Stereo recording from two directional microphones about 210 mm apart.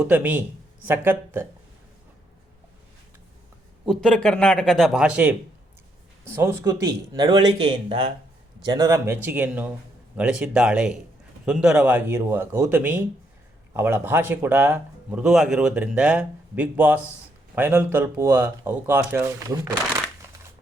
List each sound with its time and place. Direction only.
0.0 s speech: 10° right (ahead or behind)
3.8 s a man's voice: 5° left (ahead or behind); by 19.7 s 15° right (ahead or behind)
20.2 s a sound: 10° right (ahead or behind)